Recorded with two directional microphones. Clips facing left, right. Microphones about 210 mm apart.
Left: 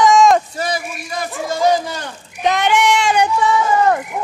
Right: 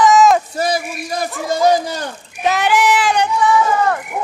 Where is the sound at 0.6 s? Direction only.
40° right (ahead or behind).